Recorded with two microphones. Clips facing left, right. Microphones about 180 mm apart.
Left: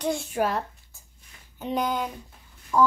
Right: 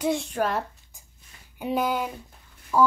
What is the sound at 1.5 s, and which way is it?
A child's voice, 5° right (ahead or behind).